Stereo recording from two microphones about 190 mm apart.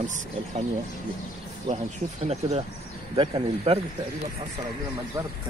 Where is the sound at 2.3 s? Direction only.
30° right (ahead or behind).